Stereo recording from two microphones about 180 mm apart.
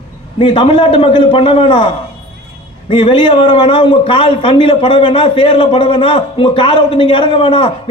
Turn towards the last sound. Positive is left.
turn(degrees=30)  # may be behind; listen again after turning